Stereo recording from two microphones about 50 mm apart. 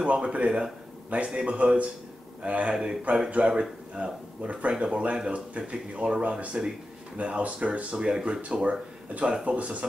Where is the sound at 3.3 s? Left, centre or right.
Centre.